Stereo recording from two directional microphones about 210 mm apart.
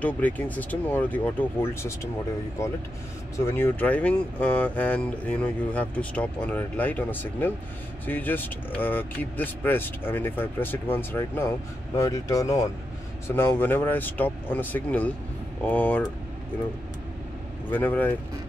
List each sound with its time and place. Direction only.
0.0 s speech: 10° left (ahead or behind)
17.6 s speech: 10° left (ahead or behind)